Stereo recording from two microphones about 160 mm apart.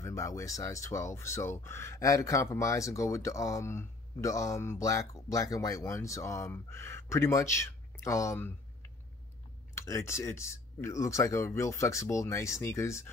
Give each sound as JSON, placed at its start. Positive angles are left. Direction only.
{"t": 0.0, "sound": "speech", "side_deg": 20}
{"t": 9.8, "sound": "speech", "side_deg": 20}